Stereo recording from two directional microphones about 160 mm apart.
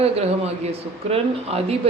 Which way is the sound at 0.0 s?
40° right (ahead or behind).